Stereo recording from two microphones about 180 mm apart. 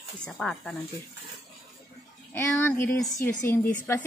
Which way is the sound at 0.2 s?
5° left (ahead or behind).